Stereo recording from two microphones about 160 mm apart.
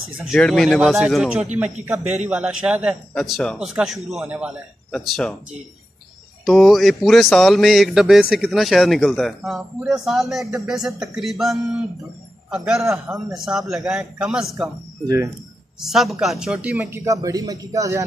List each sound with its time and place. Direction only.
0.2 s a man's voice: centre (ahead or behind)
4.9 s a man's voice: 5° left (ahead or behind)
6.4 s a man's voice: centre (ahead or behind)
15.0 s speech: 20° right (ahead or behind)
15.8 s a man's voice: centre (ahead or behind); by 18.0 s 20° right (ahead or behind)